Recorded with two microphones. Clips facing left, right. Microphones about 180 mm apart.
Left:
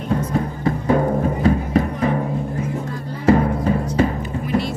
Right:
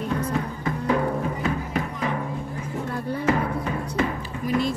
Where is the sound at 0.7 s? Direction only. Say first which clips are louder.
Left 5 dB; 35° left (ahead or behind).